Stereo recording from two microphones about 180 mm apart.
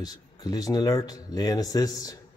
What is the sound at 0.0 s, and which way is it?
A man's voice, 20° left (ahead or behind).